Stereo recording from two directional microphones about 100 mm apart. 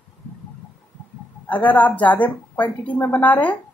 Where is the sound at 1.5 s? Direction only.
15° left (ahead or behind).